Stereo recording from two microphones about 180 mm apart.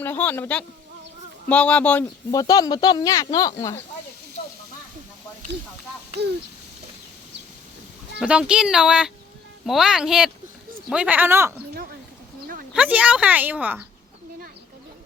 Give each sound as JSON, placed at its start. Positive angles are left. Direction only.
{"t": 0.0, "sound": "speech", "side_deg": 10}
{"t": 2.3, "sound": "speech", "side_deg": 20}
{"t": 8.2, "sound": "a woman's voice", "side_deg": -5}
{"t": 12.7, "sound": "a woman's voice", "side_deg": -10}